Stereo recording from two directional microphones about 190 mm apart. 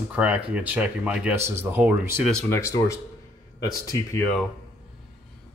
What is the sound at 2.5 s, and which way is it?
Speech, 15° left (ahead or behind).